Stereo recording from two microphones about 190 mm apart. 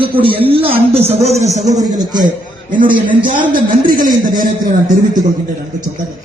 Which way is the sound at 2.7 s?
45° right (ahead or behind).